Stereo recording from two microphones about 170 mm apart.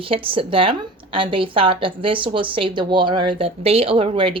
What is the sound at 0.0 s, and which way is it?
A woman's voice, 30° right (ahead or behind).